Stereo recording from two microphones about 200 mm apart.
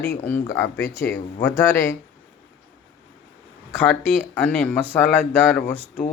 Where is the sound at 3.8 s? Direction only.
5° left (ahead or behind).